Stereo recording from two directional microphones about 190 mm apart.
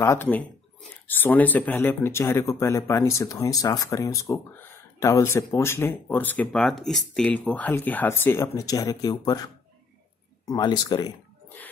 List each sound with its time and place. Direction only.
0.0 s speech: 15° left (ahead or behind)